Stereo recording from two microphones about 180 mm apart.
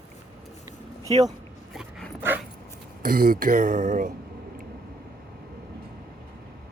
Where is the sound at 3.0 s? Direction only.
50° right (ahead or behind).